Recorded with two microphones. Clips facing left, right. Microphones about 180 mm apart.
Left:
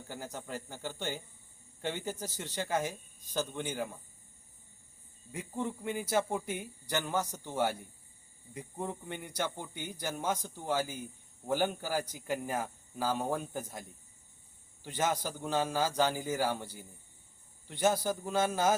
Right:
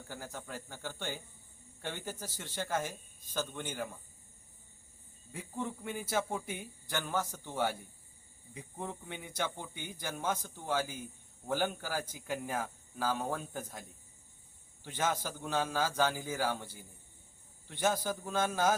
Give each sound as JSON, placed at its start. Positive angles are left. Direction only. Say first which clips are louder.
{"t": 0.1, "sound": "a man's voice", "louder": "left 3 dB", "side_deg": 15}
{"t": 5.3, "sound": "a man's voice", "louder": "left 3 dB", "side_deg": 15}
{"t": 14.8, "sound": "a man's voice", "louder": "left 2 dB", "side_deg": 15}